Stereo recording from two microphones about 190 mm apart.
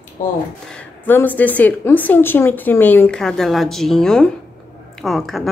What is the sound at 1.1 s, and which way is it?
A woman's voice, 10° left (ahead or behind).